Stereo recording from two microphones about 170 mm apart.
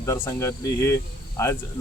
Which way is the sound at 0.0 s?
20° left (ahead or behind).